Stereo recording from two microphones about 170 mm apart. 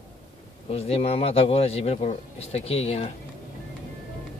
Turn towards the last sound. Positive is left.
turn(degrees=35)  # may be behind; listen again after turning